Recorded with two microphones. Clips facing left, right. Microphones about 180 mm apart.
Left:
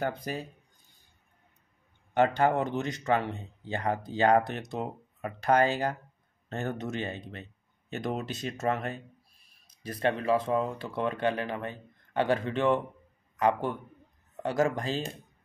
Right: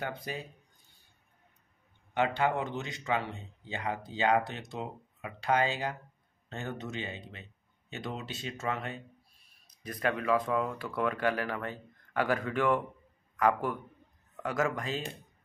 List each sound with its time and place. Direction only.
0.0 s speech: 40° left (ahead or behind)
2.1 s speech: 45° left (ahead or behind)
9.8 s speech: 30° left (ahead or behind)